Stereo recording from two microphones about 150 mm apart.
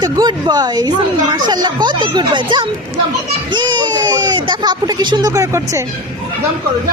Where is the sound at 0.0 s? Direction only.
25° right (ahead or behind).